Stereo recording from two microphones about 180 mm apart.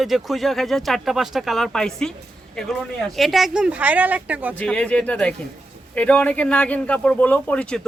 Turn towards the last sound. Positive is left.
turn(degrees=5)  # may be behind; listen again after turning